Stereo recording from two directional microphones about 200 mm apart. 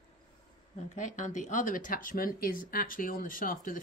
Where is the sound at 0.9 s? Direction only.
35° left (ahead or behind).